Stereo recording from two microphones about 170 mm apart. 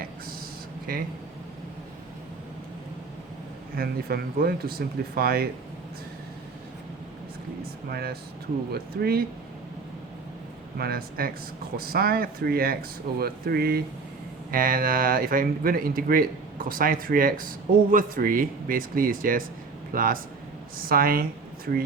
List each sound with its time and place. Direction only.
3.8 s speech: 65° right (ahead or behind)
7.9 s speech: 65° right (ahead or behind)
10.8 s speech: 65° right (ahead or behind)
14.5 s speech: 55° right (ahead or behind)